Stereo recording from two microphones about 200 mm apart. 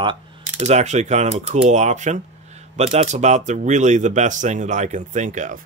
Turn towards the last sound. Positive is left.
turn(degrees=-40)  # may be behind; listen again after turning